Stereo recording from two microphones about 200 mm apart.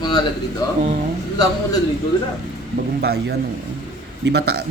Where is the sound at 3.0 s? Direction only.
55° right (ahead or behind).